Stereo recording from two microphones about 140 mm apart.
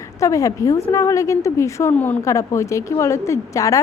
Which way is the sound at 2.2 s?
20° left (ahead or behind).